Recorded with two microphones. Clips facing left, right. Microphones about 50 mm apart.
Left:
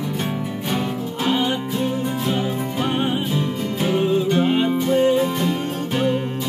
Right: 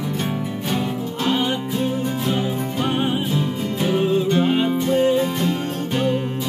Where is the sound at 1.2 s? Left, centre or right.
Centre.